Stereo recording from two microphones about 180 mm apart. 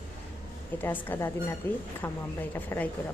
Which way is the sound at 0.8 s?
10° left (ahead or behind).